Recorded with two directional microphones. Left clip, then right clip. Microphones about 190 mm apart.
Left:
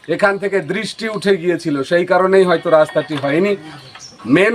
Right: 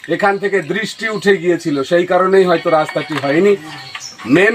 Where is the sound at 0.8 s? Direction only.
25° left (ahead or behind).